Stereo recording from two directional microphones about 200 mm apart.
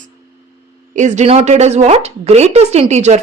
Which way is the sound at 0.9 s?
35° right (ahead or behind).